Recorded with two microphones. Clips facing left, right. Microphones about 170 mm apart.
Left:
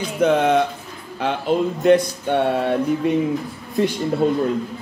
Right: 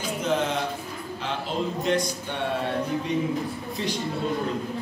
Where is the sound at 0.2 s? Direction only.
60° left (ahead or behind).